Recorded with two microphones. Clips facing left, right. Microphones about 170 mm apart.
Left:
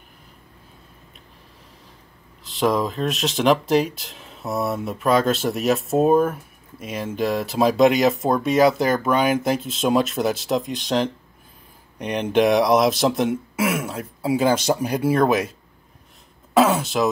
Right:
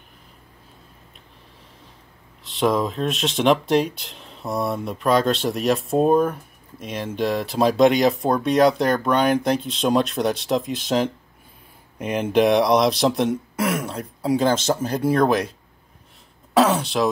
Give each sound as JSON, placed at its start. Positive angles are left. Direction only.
{"t": 2.4, "sound": "speech", "side_deg": 0}
{"t": 16.5, "sound": "speech", "side_deg": 0}